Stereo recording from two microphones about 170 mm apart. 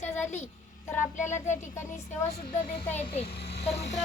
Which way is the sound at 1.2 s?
45° left (ahead or behind).